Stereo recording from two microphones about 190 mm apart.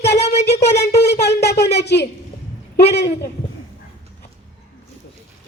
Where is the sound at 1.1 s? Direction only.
60° left (ahead or behind).